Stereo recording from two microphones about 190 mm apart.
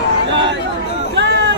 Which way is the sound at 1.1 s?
65° right (ahead or behind).